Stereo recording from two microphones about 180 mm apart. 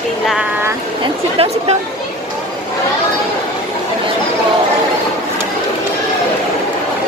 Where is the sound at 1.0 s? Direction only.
35° right (ahead or behind).